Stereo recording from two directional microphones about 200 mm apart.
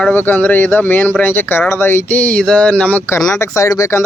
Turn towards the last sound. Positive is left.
turn(degrees=15)  # may be behind; listen again after turning